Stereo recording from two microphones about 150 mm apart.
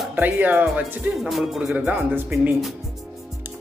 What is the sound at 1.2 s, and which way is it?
Speech, centre (ahead or behind).